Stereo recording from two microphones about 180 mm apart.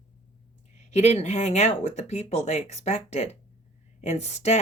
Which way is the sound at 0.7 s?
40° left (ahead or behind).